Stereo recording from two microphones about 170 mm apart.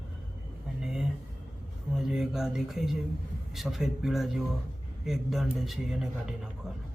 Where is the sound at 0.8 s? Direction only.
5° right (ahead or behind).